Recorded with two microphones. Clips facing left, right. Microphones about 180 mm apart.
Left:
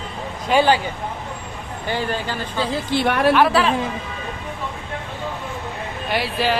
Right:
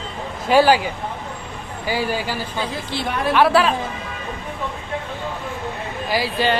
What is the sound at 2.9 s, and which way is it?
Speech, 70° left (ahead or behind).